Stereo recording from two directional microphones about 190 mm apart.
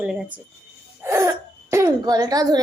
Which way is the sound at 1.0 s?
15° right (ahead or behind).